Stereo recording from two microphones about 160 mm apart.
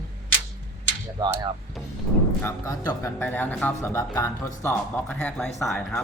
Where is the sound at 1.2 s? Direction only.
25° right (ahead or behind).